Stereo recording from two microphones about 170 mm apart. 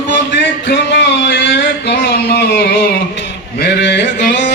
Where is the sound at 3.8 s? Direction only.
90° left.